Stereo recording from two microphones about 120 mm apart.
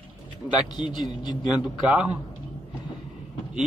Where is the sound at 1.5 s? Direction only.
10° right (ahead or behind).